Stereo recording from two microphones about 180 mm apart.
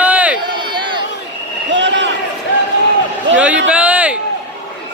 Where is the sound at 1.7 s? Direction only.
90° right.